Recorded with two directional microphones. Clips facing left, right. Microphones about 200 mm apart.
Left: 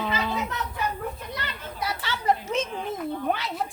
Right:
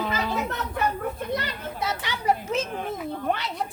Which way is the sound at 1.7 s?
20° right (ahead or behind).